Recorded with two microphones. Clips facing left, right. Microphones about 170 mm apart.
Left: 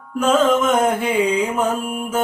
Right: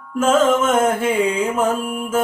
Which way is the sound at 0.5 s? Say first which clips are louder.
Even; centre (ahead or behind).